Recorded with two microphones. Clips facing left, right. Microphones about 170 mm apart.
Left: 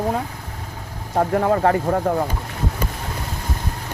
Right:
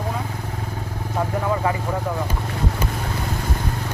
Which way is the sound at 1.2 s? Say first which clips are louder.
Left 5 dB; 55° left (ahead or behind).